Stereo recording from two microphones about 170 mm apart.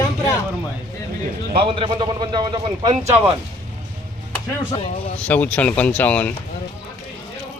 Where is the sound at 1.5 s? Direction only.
30° right (ahead or behind).